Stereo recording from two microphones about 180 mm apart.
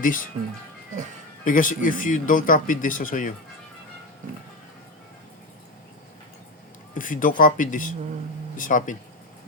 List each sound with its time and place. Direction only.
0.0 s speech: 50° left (ahead or behind)
1.5 s speech: 45° left (ahead or behind)
6.9 s speech: 50° left (ahead or behind)